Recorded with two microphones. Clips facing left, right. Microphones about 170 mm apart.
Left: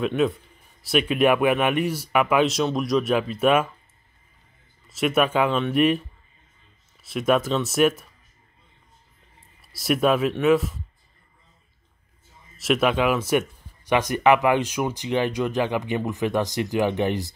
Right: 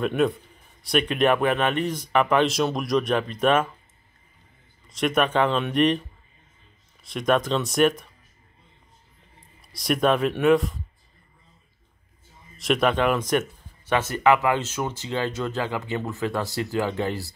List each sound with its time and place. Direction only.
0.0 s speech: centre (ahead or behind)
4.8 s speech: 5° left (ahead or behind)
9.6 s speech: 5° left (ahead or behind)
12.5 s speech: 5° left (ahead or behind)